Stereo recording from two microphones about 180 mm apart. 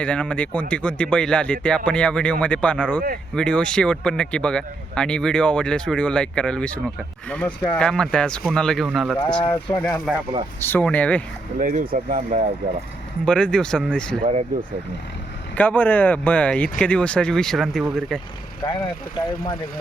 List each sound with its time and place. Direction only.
0.0 s speech: 5° left (ahead or behind)
9.4 s speech: 25° left (ahead or behind)
10.1 s speech: centre (ahead or behind)
10.6 s speech: 10° left (ahead or behind)
11.6 s speech: 45° right (ahead or behind)
13.2 s speech: 5° left (ahead or behind)
15.5 s speech: 10° left (ahead or behind)
18.6 s speech: 20° left (ahead or behind)